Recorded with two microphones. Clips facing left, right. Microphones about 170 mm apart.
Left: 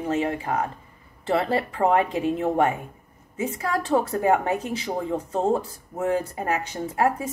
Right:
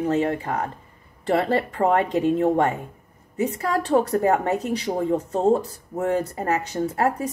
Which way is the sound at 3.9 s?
40° right (ahead or behind).